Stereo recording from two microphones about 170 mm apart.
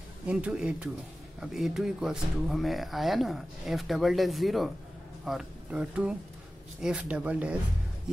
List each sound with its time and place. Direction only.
0.3 s speech: 5° right (ahead or behind)